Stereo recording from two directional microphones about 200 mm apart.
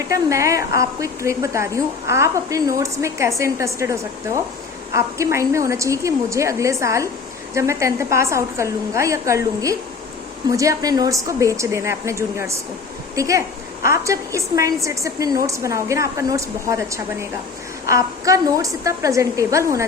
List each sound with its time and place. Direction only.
0.1 s a woman's voice: 15° right (ahead or behind)
4.9 s a woman's voice: 15° right (ahead or behind)